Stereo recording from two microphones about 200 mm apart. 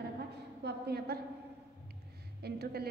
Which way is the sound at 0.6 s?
55° right (ahead or behind).